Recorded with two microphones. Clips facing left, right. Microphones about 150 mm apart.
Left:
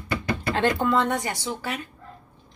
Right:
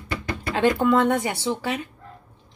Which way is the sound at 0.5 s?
5° right (ahead or behind).